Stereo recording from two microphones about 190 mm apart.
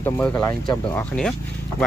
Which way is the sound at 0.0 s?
10° left (ahead or behind).